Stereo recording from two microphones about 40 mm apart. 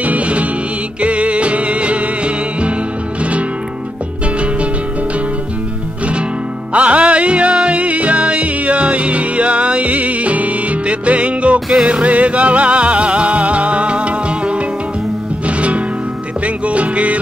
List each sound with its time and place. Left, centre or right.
0.0 s music: right
6.7 s music: right